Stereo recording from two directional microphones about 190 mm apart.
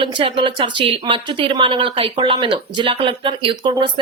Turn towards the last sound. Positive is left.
turn(degrees=-25)  # may be behind; listen again after turning